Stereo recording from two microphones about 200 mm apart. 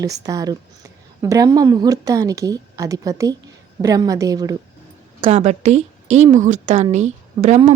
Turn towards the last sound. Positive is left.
turn(degrees=-35)  # may be behind; listen again after turning